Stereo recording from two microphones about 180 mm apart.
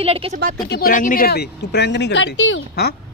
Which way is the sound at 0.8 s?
50° left (ahead or behind).